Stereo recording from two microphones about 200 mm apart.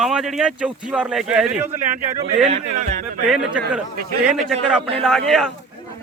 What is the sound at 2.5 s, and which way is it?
Speech, 35° right (ahead or behind).